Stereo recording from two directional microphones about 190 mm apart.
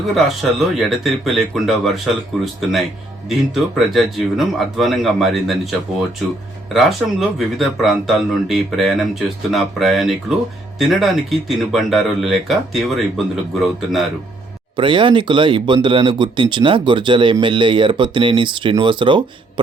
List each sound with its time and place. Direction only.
0.8 s speech: centre (ahead or behind)
6.7 s speech: centre (ahead or behind)
14.8 s speech: 25° right (ahead or behind)